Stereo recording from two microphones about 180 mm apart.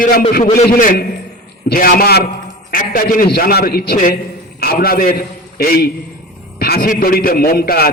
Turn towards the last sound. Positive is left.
turn(degrees=60)  # may be behind; listen again after turning